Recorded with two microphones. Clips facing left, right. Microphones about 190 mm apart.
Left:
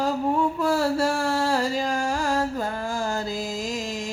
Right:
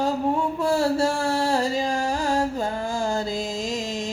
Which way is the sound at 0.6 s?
25° right (ahead or behind).